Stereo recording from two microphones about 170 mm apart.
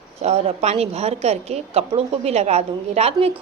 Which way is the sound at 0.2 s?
40° right (ahead or behind).